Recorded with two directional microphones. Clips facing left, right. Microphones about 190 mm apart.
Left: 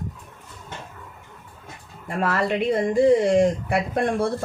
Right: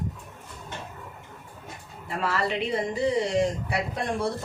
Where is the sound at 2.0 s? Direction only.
50° left (ahead or behind).